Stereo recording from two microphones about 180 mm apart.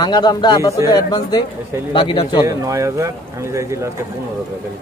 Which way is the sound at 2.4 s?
15° right (ahead or behind).